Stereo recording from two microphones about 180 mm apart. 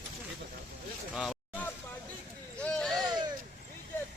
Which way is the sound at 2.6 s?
Centre (ahead or behind).